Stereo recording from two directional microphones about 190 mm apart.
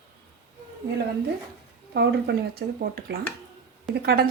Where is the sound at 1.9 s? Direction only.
60° right (ahead or behind).